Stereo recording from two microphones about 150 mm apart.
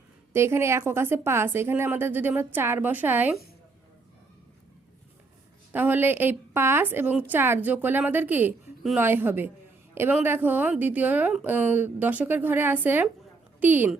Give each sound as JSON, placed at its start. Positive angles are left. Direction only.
{"t": 0.3, "sound": "a woman's voice", "side_deg": -15}
{"t": 5.7, "sound": "a woman's voice", "side_deg": -10}